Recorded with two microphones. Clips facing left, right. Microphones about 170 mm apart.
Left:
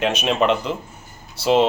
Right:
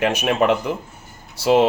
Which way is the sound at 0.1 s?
10° right (ahead or behind).